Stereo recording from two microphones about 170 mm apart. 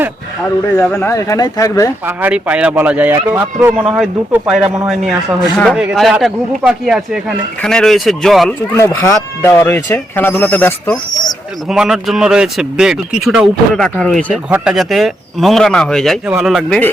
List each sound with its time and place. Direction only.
0.8 s speech: 15° left (ahead or behind)
2.0 s a man's voice: 10° right (ahead or behind)
8.7 s speech: 15° left (ahead or behind)
11.7 s speech: centre (ahead or behind)
14.5 s speech: 5° right (ahead or behind)